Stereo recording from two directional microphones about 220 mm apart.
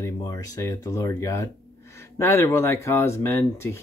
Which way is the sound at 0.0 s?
15° left (ahead or behind).